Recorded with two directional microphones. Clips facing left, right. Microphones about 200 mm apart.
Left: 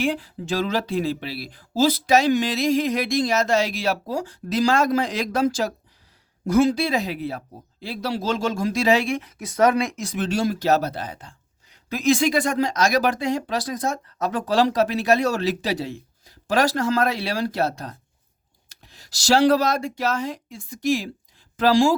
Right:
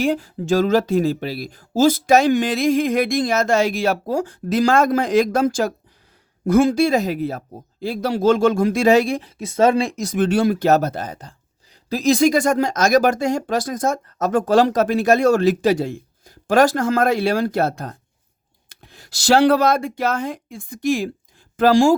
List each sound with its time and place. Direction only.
0.0 s speech: 45° right (ahead or behind)